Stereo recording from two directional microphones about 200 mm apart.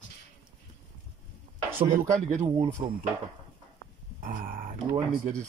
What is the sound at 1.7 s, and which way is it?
Speech, 40° right (ahead or behind).